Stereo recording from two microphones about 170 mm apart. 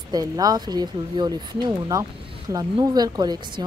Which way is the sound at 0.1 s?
20° right (ahead or behind).